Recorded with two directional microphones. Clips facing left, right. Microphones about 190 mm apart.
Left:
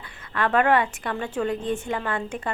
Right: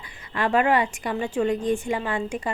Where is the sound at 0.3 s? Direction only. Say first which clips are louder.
Even; 10° right (ahead or behind).